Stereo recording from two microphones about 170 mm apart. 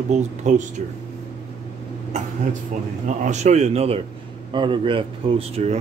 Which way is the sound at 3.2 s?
40° right (ahead or behind).